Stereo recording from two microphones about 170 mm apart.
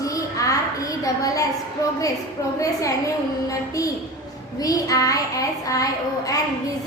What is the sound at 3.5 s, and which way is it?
A child's voice, 20° left (ahead or behind).